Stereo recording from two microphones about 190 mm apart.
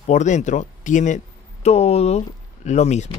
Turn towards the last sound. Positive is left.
turn(degrees=35)  # may be behind; listen again after turning